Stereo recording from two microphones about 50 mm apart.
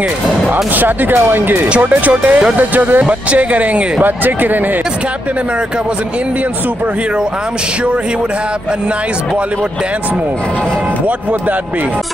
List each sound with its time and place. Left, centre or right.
0.7 s speech: right
1.7 s speech: right